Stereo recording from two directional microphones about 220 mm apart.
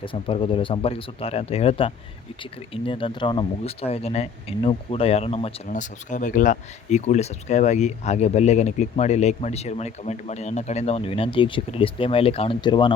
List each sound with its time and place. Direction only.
0.0 s speech: 25° left (ahead or behind)